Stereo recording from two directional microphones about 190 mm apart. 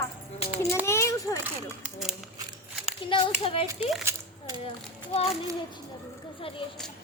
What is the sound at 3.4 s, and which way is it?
Speech, 30° left (ahead or behind).